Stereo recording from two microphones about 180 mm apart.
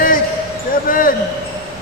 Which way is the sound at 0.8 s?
50° left (ahead or behind).